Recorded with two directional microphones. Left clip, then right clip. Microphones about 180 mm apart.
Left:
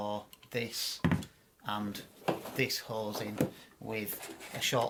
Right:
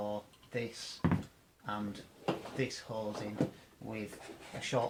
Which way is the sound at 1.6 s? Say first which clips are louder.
Left 3 dB; 20° left (ahead or behind).